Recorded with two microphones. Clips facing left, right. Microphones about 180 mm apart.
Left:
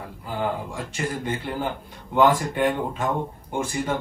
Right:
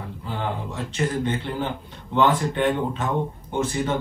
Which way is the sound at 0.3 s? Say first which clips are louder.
Left 2 dB; 10° left (ahead or behind).